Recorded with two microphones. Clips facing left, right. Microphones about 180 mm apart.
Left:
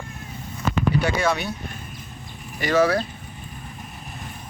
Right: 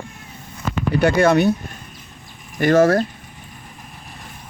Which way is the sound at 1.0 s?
55° right (ahead or behind).